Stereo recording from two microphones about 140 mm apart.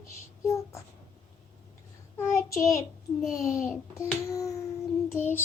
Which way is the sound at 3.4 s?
20° left (ahead or behind).